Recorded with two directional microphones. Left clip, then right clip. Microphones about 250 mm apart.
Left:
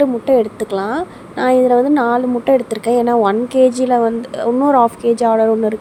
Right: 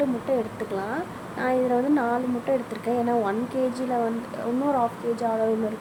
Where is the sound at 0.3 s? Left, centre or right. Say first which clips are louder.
Left 12 dB; left.